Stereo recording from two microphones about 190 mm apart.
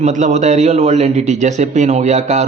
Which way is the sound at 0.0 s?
35° right (ahead or behind).